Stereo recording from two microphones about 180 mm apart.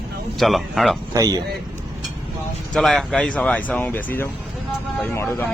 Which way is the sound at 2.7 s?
Centre (ahead or behind).